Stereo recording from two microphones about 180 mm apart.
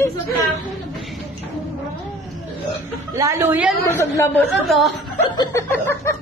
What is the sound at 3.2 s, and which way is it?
Speech, 15° right (ahead or behind).